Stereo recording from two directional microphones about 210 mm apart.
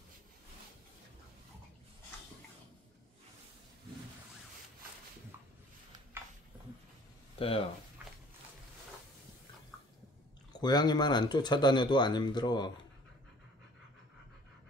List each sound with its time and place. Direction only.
6.2 s a sound: 10° right (ahead or behind)
7.3 s speech: 25° left (ahead or behind)
10.5 s speech: 20° left (ahead or behind)